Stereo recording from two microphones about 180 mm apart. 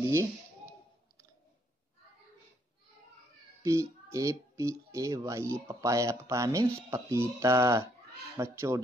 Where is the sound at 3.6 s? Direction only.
15° right (ahead or behind).